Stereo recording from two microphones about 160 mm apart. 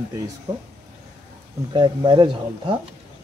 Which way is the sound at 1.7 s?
30° right (ahead or behind).